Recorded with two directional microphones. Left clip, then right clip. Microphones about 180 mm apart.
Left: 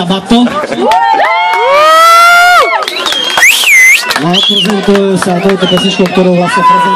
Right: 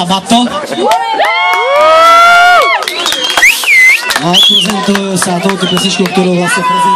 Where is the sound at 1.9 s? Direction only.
5° left (ahead or behind).